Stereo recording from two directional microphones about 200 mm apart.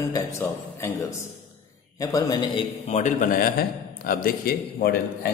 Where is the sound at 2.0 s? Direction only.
20° left (ahead or behind).